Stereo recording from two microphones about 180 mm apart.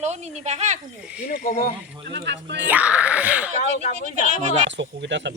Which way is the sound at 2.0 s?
70° right (ahead or behind).